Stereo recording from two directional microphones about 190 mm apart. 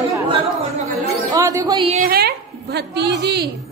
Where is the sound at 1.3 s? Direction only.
15° right (ahead or behind).